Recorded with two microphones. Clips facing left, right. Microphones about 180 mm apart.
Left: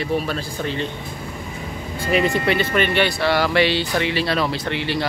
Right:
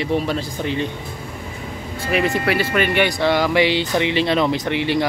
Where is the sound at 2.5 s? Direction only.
10° right (ahead or behind).